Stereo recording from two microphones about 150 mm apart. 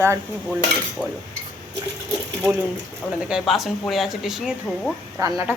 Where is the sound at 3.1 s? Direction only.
5° right (ahead or behind).